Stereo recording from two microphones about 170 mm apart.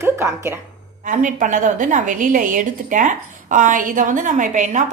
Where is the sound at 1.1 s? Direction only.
50° right (ahead or behind).